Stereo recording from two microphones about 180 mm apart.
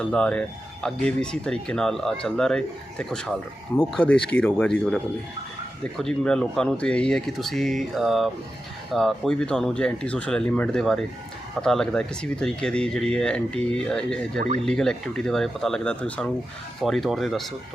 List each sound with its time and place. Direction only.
0.0 s speech: 5° left (ahead or behind)